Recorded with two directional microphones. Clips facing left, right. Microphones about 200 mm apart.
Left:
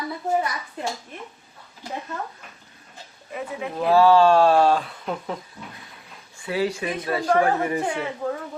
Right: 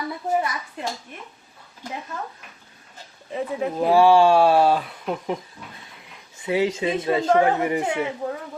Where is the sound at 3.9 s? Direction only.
15° right (ahead or behind).